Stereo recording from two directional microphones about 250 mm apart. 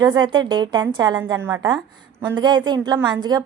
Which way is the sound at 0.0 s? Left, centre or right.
Centre.